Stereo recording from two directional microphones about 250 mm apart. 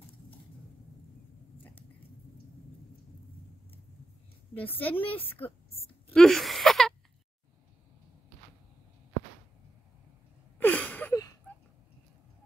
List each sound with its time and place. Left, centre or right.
4.6 s a woman's voice: centre
6.1 s a sound: centre
10.6 s gasp: centre